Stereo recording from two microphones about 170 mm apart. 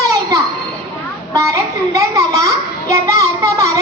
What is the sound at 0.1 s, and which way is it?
Music, 20° right (ahead or behind).